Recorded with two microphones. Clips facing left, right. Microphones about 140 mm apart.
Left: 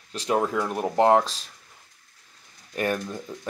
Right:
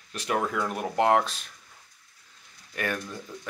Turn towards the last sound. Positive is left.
turn(degrees=30)  # may be behind; listen again after turning